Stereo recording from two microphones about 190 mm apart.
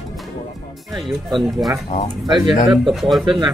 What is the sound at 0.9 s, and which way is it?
Speech, centre (ahead or behind).